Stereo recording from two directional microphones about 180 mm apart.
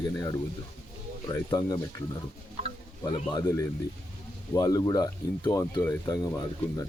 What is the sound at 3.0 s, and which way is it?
Speech, 20° left (ahead or behind).